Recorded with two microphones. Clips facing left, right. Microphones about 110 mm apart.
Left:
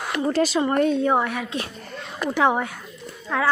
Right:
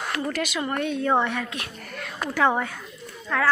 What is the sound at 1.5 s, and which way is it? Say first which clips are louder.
A woman's voice: left 5 dB; 25° left (ahead or behind).